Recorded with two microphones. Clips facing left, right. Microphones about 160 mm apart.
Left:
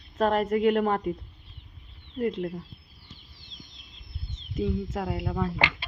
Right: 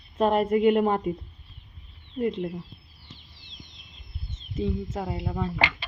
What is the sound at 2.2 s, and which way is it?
Speech, 5° right (ahead or behind).